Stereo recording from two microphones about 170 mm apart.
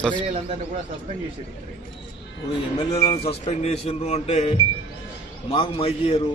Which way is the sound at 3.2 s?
40° left (ahead or behind).